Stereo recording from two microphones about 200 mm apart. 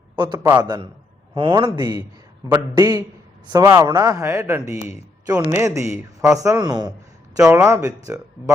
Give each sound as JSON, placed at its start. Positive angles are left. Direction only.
{"t": 0.2, "sound": "a man's voice", "side_deg": -20}
{"t": 7.3, "sound": "a man's voice", "side_deg": -5}